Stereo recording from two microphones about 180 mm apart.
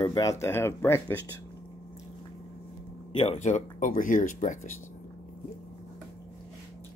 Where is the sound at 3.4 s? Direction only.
45° left (ahead or behind).